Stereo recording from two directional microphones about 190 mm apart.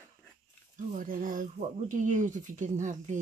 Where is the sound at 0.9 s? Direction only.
45° right (ahead or behind).